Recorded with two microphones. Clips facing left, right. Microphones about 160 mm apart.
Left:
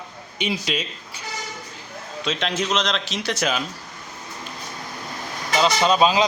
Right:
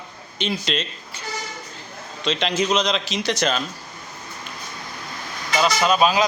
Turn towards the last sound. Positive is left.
turn(degrees=25)  # may be behind; listen again after turning